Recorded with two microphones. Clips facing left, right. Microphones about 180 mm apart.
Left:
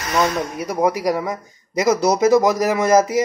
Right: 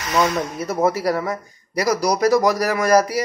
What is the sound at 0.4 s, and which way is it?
A man's voice, 15° left (ahead or behind).